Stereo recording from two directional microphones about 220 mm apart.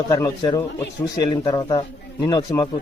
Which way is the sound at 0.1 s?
15° left (ahead or behind).